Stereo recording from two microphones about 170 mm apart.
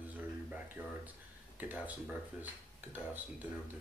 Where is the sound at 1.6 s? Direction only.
10° right (ahead or behind).